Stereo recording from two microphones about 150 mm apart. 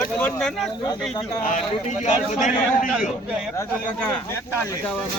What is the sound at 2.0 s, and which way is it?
Speech, 55° left (ahead or behind).